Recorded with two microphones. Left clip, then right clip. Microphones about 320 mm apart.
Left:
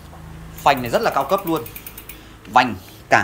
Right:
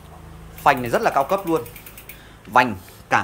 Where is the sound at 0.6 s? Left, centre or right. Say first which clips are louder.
Left 1 dB; centre.